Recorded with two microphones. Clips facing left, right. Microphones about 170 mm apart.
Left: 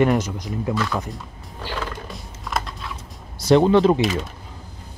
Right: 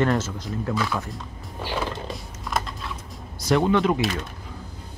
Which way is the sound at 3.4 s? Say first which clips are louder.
Left 5 dB; 30° left (ahead or behind).